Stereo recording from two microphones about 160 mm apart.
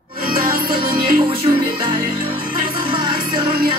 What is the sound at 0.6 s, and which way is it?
Music, 30° right (ahead or behind).